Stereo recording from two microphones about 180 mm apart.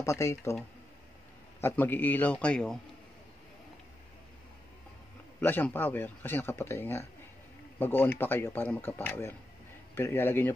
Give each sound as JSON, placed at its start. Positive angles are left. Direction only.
{"t": 0.0, "sound": "speech", "side_deg": 15}
{"t": 1.6, "sound": "speech", "side_deg": 10}
{"t": 5.4, "sound": "speech", "side_deg": 10}